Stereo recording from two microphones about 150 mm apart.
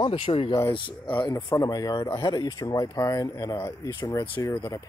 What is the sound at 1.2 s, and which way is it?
Speech, 20° left (ahead or behind).